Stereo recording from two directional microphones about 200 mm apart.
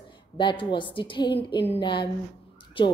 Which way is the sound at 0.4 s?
25° left (ahead or behind).